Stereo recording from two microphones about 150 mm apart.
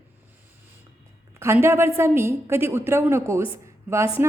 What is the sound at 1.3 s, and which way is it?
A woman's voice, 15° right (ahead or behind).